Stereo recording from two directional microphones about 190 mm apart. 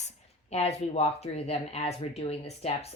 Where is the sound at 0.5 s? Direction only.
35° left (ahead or behind).